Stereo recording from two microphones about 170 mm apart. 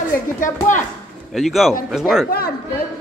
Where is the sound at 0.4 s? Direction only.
50° left (ahead or behind).